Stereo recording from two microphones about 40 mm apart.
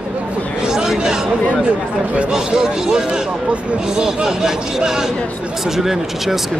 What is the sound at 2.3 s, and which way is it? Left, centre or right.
Speech, centre.